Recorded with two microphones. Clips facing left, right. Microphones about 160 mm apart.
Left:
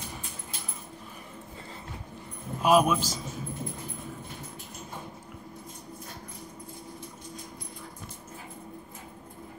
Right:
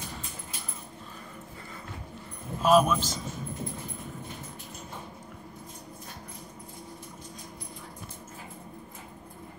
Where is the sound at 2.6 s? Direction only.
10° left (ahead or behind).